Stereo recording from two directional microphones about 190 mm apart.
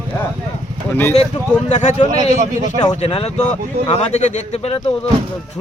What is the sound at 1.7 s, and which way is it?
Speech, 40° left (ahead or behind).